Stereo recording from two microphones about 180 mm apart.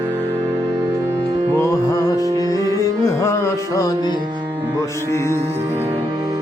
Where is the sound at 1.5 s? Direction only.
15° left (ahead or behind).